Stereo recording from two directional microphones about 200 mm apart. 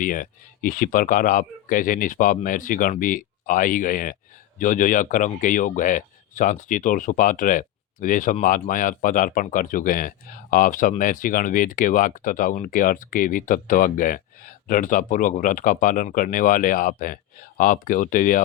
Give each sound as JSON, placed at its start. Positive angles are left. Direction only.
{"t": 0.0, "sound": "speech", "side_deg": 40}